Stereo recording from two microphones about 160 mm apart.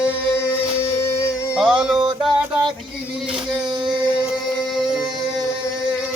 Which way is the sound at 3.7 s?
30° right (ahead or behind).